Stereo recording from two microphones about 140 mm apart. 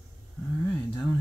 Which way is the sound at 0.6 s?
10° left (ahead or behind).